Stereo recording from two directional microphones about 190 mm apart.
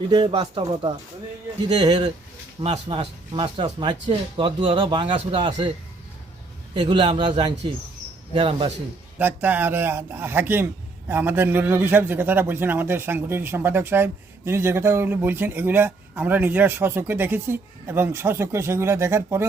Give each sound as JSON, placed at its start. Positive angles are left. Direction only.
{"t": 0.1, "sound": "speech", "side_deg": -25}
{"t": 6.7, "sound": "speech", "side_deg": -25}
{"t": 9.1, "sound": "a man's voice", "side_deg": -10}